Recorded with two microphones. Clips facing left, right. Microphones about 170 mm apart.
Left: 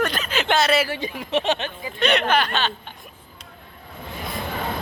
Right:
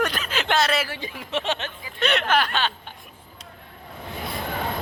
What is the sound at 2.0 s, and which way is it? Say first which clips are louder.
Speech: left 2 dB; centre (ahead or behind).